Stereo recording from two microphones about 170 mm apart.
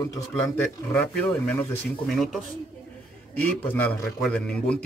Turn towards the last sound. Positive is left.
turn(degrees=5)  # may be behind; listen again after turning